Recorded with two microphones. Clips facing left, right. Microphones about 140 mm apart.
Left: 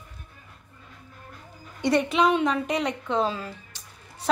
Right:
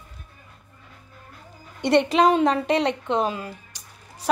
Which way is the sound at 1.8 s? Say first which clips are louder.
Right 4 dB; 65° right (ahead or behind).